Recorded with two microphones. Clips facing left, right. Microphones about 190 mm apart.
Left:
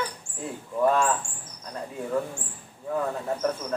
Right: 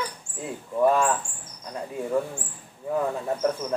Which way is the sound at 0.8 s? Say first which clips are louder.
Right 2 dB; 10° right (ahead or behind).